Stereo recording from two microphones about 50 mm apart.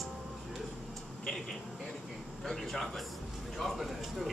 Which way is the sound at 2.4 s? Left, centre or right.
Centre.